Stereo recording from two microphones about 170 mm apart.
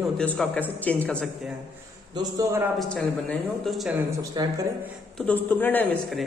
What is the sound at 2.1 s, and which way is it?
Speech, 15° right (ahead or behind).